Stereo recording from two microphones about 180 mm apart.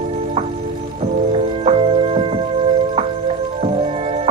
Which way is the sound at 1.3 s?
35° right (ahead or behind).